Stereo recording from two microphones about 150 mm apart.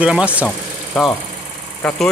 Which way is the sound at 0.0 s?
10° right (ahead or behind).